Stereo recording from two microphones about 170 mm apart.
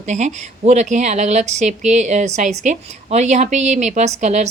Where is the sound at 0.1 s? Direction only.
45° right (ahead or behind).